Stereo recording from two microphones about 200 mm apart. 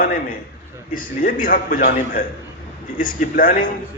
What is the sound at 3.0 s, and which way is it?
Speech, 45° left (ahead or behind).